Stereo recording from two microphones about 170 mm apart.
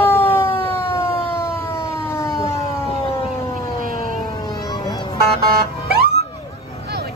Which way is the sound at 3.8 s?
55° right (ahead or behind).